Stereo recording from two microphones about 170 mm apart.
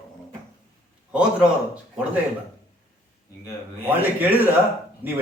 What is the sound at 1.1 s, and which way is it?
Speech, 5° right (ahead or behind).